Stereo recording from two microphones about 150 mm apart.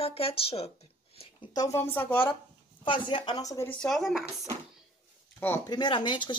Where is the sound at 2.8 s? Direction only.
35° left (ahead or behind).